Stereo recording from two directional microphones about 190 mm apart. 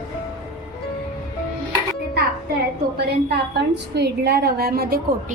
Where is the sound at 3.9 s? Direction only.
60° right (ahead or behind).